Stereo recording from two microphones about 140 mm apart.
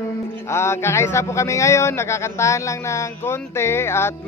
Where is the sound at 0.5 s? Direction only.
20° left (ahead or behind).